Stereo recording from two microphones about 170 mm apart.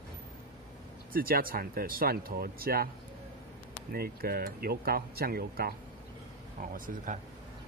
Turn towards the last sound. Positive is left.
turn(degrees=-55)  # may be behind; listen again after turning